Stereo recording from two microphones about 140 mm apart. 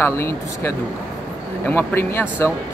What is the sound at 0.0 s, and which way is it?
Speech, 20° left (ahead or behind).